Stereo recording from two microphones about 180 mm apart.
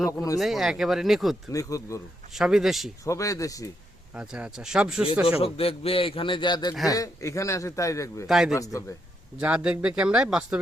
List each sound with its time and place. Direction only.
0.0 s a man's voice: 20° left (ahead or behind)
0.3 s speech: centre (ahead or behind)
1.5 s a man's voice: 20° left (ahead or behind)
2.3 s speech: 5° right (ahead or behind)
3.0 s a man's voice: 20° left (ahead or behind)
4.1 s speech: 5° right (ahead or behind)
5.4 s a man's voice: 30° left (ahead or behind); by 8.3 s 15° left (ahead or behind)
8.3 s speech: centre (ahead or behind)
8.5 s a man's voice: 20° left (ahead or behind)
9.4 s speech: 5° right (ahead or behind)